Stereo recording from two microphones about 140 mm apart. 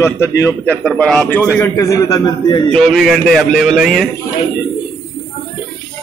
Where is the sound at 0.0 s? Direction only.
20° left (ahead or behind).